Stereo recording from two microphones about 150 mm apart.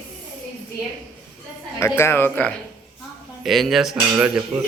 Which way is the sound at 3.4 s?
Centre (ahead or behind).